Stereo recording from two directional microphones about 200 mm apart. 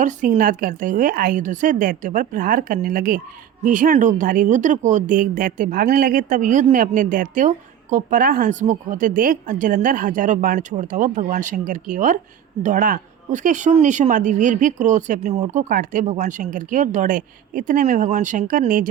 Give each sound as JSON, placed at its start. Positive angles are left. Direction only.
{"t": 0.0, "sound": "a woman's voice", "side_deg": -40}